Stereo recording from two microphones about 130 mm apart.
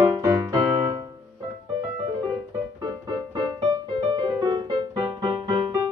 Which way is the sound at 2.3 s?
30° right (ahead or behind).